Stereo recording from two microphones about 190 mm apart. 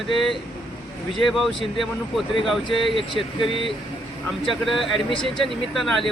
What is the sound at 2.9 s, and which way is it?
Speech, 25° left (ahead or behind).